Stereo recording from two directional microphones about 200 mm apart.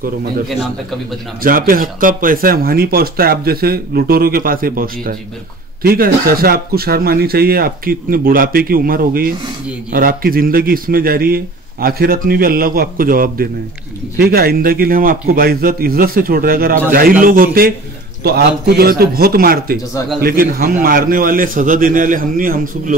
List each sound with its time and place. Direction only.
1.4 s speech: 45° right (ahead or behind)